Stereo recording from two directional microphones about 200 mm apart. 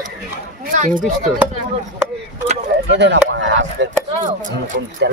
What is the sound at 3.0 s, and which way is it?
Speech, 60° right (ahead or behind).